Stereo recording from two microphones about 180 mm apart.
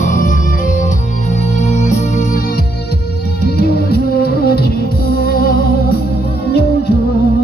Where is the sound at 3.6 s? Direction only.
60° left (ahead or behind).